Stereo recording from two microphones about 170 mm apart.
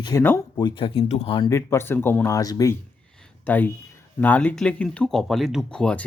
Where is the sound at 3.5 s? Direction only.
10° left (ahead or behind).